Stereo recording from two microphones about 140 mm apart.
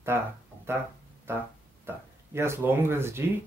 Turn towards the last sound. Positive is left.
turn(degrees=-15)  # may be behind; listen again after turning